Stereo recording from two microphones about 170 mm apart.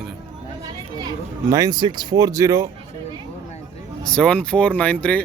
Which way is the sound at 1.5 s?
20° right (ahead or behind).